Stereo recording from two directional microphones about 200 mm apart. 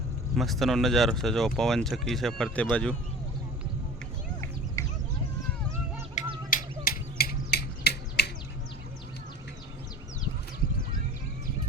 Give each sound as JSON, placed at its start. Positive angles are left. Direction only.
{"t": 0.3, "sound": "speech", "side_deg": 0}
{"t": 4.4, "sound": "a sound", "side_deg": 15}
{"t": 6.2, "sound": "finger snapping", "side_deg": 35}